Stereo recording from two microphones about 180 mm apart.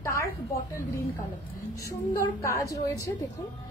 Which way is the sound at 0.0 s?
15° left (ahead or behind).